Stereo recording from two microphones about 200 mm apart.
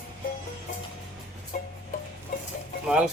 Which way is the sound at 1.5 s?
40° left (ahead or behind).